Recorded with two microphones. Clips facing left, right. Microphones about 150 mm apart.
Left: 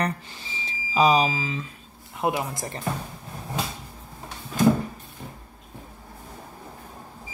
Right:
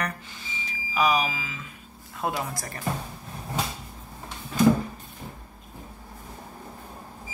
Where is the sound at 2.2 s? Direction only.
20° left (ahead or behind).